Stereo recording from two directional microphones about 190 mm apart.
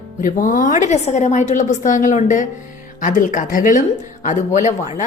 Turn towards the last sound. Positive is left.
turn(degrees=40)  # may be behind; listen again after turning